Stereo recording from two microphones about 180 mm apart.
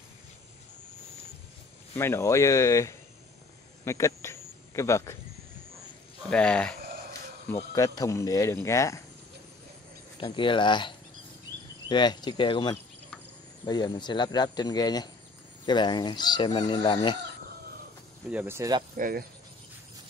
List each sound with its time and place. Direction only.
2.0 s speech: 15° left (ahead or behind)
6.3 s speech: 5° left (ahead or behind)
7.7 s speech: 20° left (ahead or behind)
10.2 s speech: 25° left (ahead or behind)
18.3 s speech: 10° right (ahead or behind)
18.9 s speech: 50° right (ahead or behind)